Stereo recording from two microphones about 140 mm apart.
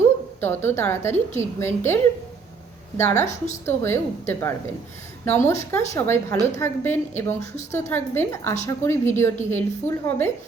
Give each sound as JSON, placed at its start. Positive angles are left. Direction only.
{"t": 0.3, "sound": "a woman's voice", "side_deg": 15}
{"t": 3.2, "sound": "a woman's voice", "side_deg": 55}
{"t": 3.7, "sound": "a woman's voice", "side_deg": 15}